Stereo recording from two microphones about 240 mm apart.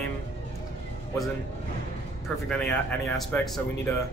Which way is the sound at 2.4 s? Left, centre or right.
Centre.